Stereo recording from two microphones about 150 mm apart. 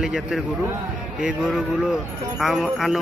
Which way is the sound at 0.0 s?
5° right (ahead or behind).